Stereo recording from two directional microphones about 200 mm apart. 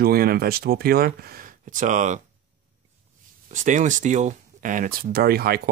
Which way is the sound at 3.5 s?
40° right (ahead or behind).